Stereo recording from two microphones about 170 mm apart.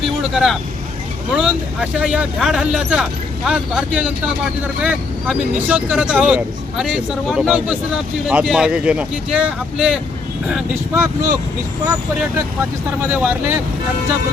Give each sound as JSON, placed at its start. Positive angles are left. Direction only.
{"t": 1.3, "sound": "speech", "side_deg": -5}
{"t": 10.9, "sound": "speech", "side_deg": -15}
{"t": 13.1, "sound": "speech", "side_deg": -10}